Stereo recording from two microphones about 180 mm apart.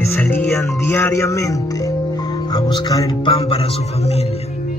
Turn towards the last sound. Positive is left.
turn(degrees=35)  # may be behind; listen again after turning